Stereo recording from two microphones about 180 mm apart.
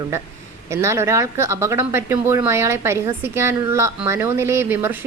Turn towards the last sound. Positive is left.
turn(degrees=-10)  # may be behind; listen again after turning